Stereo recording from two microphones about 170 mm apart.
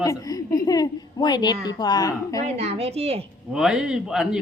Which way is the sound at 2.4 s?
40° right (ahead or behind).